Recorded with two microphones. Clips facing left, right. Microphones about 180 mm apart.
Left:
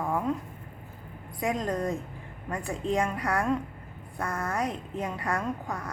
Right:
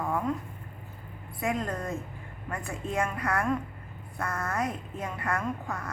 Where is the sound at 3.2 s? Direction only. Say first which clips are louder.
Left 1 dB; 15° left (ahead or behind).